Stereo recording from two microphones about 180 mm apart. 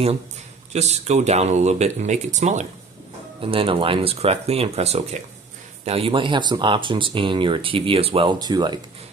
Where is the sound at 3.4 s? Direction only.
30° right (ahead or behind).